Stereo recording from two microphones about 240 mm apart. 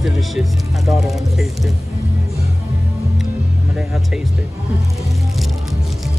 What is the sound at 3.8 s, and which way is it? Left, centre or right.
Vehicle, centre.